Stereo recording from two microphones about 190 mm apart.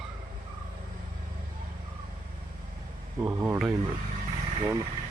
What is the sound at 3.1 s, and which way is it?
Speech, 15° right (ahead or behind).